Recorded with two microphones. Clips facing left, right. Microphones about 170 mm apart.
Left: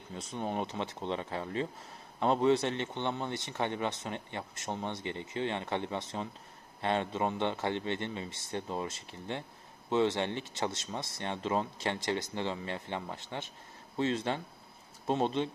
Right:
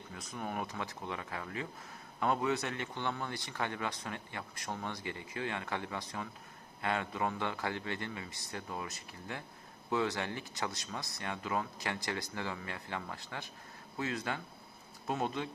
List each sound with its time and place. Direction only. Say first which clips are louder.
0.1 s speech: left 5 dB; 25° left (ahead or behind)